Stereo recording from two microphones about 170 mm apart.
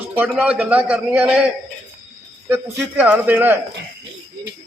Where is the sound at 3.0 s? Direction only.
10° right (ahead or behind).